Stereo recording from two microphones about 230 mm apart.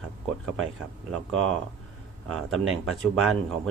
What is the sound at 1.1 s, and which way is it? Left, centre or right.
Speech, centre.